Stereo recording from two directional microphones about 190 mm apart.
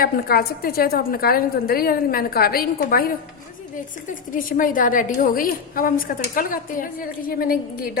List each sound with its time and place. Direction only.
0.0 s a woman's voice: 55° left (ahead or behind)
4.3 s a woman's voice: 45° left (ahead or behind)